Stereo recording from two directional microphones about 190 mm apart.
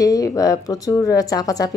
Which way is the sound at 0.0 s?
20° left (ahead or behind).